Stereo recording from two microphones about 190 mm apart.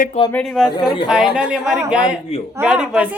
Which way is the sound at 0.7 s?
25° left (ahead or behind).